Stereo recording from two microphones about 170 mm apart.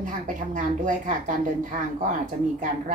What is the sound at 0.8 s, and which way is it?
A woman's voice, 50° right (ahead or behind).